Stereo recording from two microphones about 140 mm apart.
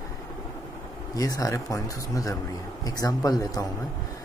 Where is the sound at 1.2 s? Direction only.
25° left (ahead or behind).